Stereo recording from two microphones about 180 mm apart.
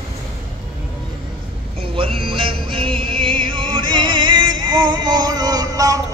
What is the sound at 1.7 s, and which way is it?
Music, 30° right (ahead or behind).